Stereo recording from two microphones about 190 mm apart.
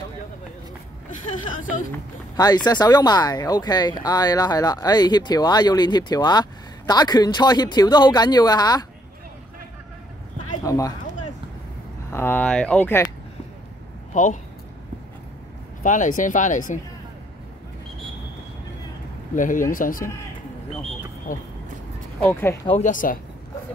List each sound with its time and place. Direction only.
2.3 s speech: 20° left (ahead or behind)
10.6 s speech: 15° left (ahead or behind)
12.1 s speech: 10° left (ahead or behind)
14.1 s speech: 40° left (ahead or behind)
15.8 s speech: 40° left (ahead or behind)
19.3 s speech: 45° left (ahead or behind)
21.3 s speech: 45° left (ahead or behind)
22.2 s speech: 10° left (ahead or behind)
22.7 s speech: 40° left (ahead or behind)